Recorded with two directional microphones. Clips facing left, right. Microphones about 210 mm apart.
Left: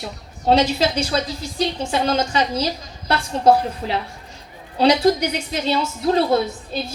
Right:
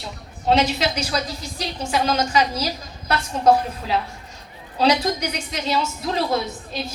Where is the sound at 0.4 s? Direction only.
30° left (ahead or behind).